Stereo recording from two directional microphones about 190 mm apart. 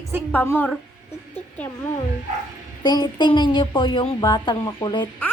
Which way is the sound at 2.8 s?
20° left (ahead or behind).